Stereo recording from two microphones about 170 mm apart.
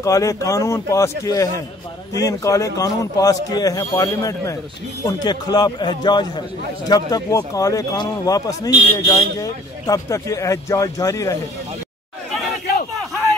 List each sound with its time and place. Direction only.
0.0 s a man's voice: 20° left (ahead or behind)